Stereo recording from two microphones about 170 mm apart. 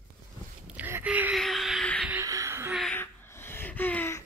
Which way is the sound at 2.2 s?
20° right (ahead or behind).